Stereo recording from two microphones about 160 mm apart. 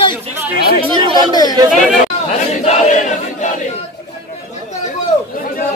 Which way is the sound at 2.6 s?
45° left (ahead or behind).